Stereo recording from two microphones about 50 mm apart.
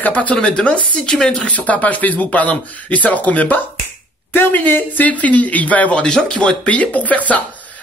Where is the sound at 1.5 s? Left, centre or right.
Left.